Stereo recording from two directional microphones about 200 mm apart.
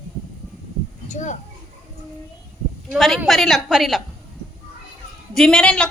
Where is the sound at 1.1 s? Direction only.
40° left (ahead or behind).